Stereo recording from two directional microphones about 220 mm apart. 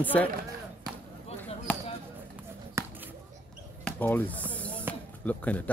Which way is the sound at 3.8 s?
10° left (ahead or behind).